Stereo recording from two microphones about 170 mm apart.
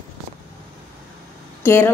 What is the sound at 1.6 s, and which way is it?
Speech, 15° left (ahead or behind).